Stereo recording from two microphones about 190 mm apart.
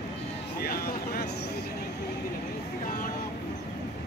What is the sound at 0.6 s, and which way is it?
Vehicle, 50° left (ahead or behind).